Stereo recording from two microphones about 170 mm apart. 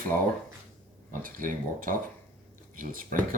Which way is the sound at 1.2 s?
55° right (ahead or behind).